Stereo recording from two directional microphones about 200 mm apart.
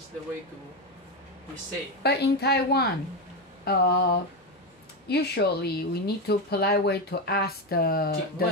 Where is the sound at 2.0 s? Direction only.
55° left (ahead or behind).